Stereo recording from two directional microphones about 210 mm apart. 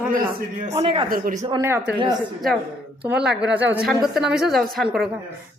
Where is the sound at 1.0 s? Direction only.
40° right (ahead or behind).